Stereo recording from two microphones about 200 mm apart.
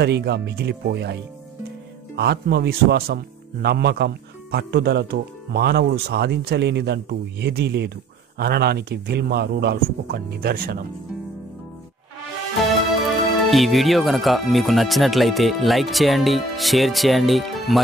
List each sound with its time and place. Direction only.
0.0 s speech: 55° right (ahead or behind)
2.1 s speech: 55° right (ahead or behind)
13.5 s speech: centre (ahead or behind)